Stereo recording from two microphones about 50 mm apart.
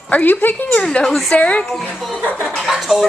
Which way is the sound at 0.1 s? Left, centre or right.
Left.